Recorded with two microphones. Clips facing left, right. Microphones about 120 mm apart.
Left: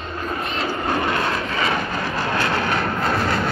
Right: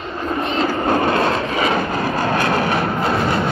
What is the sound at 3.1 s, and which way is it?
Vehicle, 15° right (ahead or behind).